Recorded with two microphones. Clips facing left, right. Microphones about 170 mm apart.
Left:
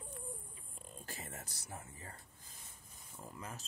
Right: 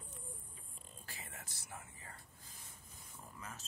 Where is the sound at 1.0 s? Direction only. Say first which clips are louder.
Left 5 dB; 45° left (ahead or behind).